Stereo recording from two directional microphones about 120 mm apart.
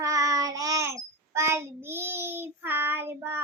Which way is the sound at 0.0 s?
30° right (ahead or behind).